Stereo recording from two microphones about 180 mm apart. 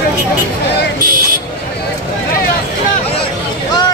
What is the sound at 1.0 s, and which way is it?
Speech, 50° right (ahead or behind).